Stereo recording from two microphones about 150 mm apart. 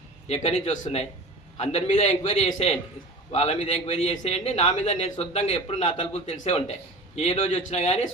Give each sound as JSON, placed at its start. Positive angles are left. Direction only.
{"t": 0.3, "sound": "a man's voice", "side_deg": 45}